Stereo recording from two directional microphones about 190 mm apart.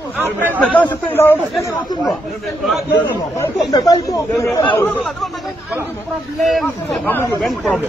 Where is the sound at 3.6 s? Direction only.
20° left (ahead or behind).